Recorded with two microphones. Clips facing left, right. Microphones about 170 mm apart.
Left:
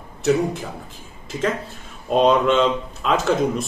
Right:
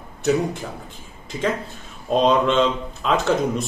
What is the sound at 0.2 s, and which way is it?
Speech, centre (ahead or behind).